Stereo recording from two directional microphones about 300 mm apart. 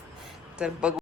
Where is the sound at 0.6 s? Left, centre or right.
Centre.